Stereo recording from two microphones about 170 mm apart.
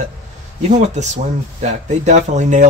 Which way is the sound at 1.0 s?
45° right (ahead or behind).